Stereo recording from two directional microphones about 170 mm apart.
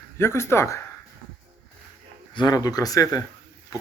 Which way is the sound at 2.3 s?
25° left (ahead or behind).